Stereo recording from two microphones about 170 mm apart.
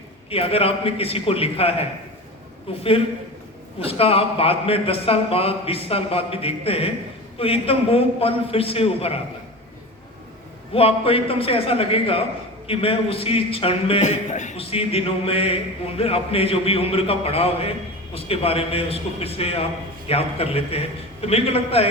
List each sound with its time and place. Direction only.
0.3 s a man's voice: 35° left (ahead or behind)
10.8 s a man's voice: 35° left (ahead or behind)